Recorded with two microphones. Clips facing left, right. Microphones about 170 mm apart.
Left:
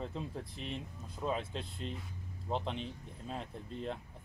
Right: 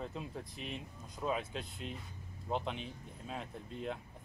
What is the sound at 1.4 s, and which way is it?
Speech, 30° left (ahead or behind).